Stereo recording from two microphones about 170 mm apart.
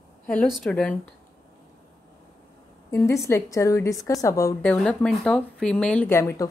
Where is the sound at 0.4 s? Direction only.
5° left (ahead or behind).